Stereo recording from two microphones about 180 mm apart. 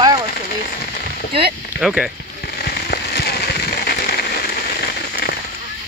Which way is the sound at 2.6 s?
60° left (ahead or behind).